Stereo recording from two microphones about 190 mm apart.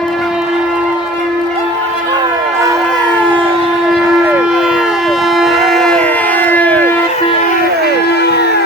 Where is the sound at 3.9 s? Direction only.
5° right (ahead or behind).